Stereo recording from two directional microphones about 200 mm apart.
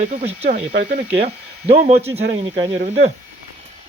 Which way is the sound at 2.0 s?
30° right (ahead or behind).